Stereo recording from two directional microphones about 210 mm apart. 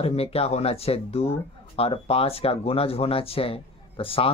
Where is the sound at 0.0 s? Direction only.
30° left (ahead or behind).